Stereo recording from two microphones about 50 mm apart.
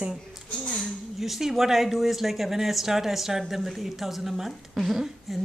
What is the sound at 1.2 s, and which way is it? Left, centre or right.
A woman's voice, centre.